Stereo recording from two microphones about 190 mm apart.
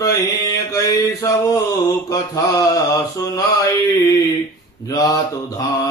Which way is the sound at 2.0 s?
15° left (ahead or behind).